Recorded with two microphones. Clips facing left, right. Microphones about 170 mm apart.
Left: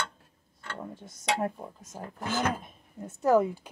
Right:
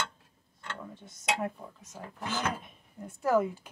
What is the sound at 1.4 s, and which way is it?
Speech, 35° left (ahead or behind).